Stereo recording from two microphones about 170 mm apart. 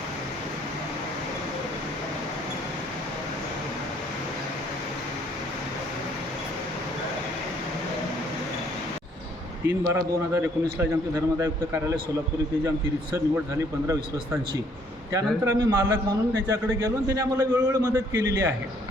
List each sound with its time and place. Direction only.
9.6 s a man's voice: 15° right (ahead or behind)
15.1 s a man's voice: 20° right (ahead or behind)